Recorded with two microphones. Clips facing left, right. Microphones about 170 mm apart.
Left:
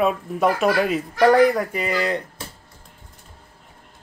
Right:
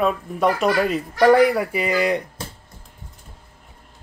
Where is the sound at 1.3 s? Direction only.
10° right (ahead or behind).